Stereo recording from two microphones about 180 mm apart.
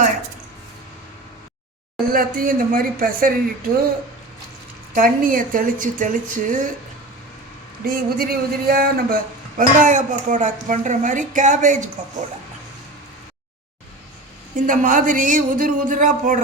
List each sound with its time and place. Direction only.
2.0 s speech: 50° right (ahead or behind)
4.9 s speech: 50° right (ahead or behind)
7.9 s speech: 55° right (ahead or behind)
14.5 s speech: 45° right (ahead or behind)